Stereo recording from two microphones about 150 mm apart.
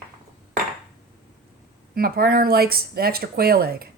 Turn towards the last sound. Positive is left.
turn(degrees=-90)